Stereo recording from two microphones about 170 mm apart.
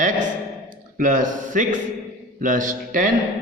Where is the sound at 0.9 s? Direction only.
50° right (ahead or behind).